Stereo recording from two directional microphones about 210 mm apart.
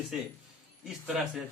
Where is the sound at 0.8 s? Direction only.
Centre (ahead or behind).